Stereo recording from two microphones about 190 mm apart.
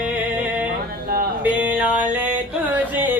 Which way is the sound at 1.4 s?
10° right (ahead or behind).